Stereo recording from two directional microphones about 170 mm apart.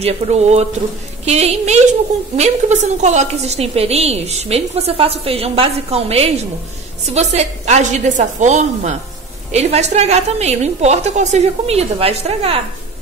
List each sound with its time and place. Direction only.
0.0 s a woman's voice: 40° right (ahead or behind)